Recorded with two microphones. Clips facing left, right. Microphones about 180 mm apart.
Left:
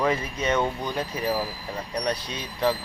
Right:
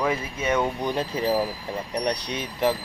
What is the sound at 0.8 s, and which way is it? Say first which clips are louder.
Speech: right 3 dB; 25° right (ahead or behind).